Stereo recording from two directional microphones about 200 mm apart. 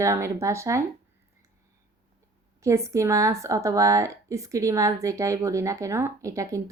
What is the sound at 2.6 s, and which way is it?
Speech, 15° right (ahead or behind).